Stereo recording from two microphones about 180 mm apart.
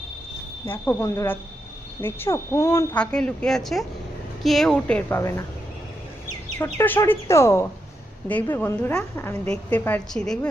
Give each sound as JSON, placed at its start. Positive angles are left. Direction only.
{"t": 0.6, "sound": "a woman's voice", "side_deg": 10}
{"t": 2.9, "sound": "a woman's voice", "side_deg": 5}
{"t": 6.6, "sound": "a woman's voice", "side_deg": 10}